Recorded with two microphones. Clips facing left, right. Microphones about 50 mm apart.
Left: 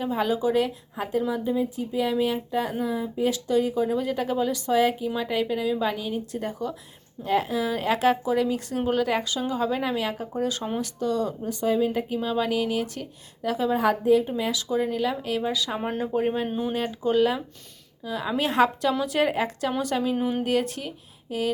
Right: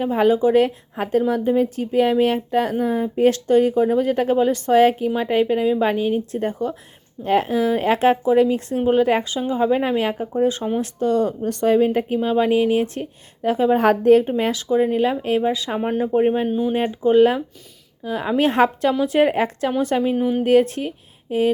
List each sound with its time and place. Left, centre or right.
0.0 s speech: right
11.4 s speech: right
13.7 s speech: right
14.3 s speech: right
15.8 s speech: centre
16.1 s speech: right
16.5 s speech: centre
16.9 s speech: right
20.1 s speech: centre
20.4 s speech: right